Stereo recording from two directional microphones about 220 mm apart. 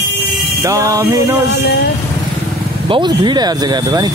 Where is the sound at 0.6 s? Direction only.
15° right (ahead or behind).